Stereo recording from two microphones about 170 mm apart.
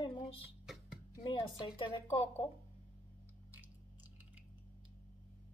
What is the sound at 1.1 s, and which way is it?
Speech, 25° left (ahead or behind).